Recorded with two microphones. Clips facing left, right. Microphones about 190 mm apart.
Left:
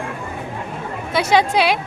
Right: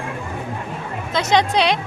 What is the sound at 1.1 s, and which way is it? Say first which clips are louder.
Speech: left 1 dB; 10° left (ahead or behind).